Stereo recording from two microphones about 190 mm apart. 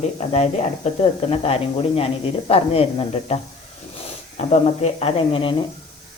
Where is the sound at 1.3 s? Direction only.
30° left (ahead or behind).